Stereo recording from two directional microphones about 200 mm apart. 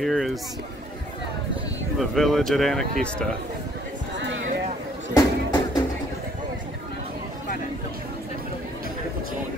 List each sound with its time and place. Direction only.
0.0 s speech: centre (ahead or behind)
2.0 s speech: centre (ahead or behind)
4.2 s a sound: 70° right (ahead or behind)
5.1 s music: 20° left (ahead or behind)